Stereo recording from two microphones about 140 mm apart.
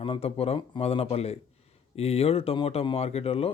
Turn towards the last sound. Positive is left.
turn(degrees=45)  # may be behind; listen again after turning